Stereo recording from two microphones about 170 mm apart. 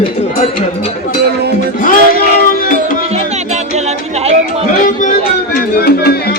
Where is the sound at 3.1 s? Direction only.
40° right (ahead or behind).